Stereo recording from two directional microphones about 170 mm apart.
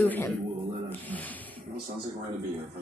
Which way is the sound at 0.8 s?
10° left (ahead or behind).